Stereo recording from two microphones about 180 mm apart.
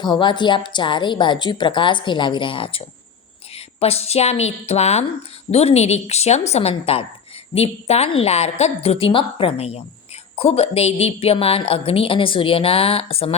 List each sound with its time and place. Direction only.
0.0 s a woman's voice: 25° left (ahead or behind)